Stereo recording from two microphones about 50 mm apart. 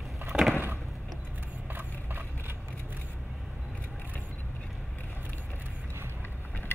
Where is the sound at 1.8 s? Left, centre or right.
Right.